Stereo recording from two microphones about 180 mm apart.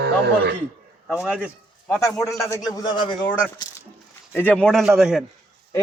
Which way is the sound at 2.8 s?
25° left (ahead or behind).